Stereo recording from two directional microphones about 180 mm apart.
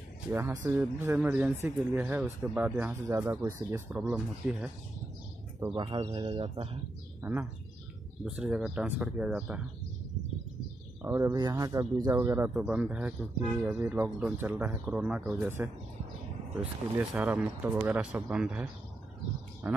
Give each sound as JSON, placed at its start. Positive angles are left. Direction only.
{"t": 0.3, "sound": "speech", "side_deg": -15}
{"t": 5.8, "sound": "speech", "side_deg": -25}
{"t": 7.2, "sound": "speech", "side_deg": -15}
{"t": 8.2, "sound": "speech", "side_deg": -5}
{"t": 11.0, "sound": "speech", "side_deg": -15}
{"t": 16.9, "sound": "speech", "side_deg": -10}